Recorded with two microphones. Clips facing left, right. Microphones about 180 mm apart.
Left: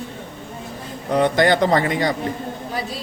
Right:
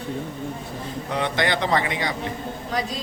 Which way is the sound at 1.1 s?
45° left (ahead or behind).